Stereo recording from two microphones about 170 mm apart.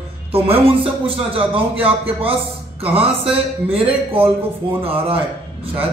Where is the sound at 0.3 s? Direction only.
35° right (ahead or behind).